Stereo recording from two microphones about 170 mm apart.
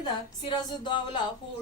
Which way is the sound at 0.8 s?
25° left (ahead or behind).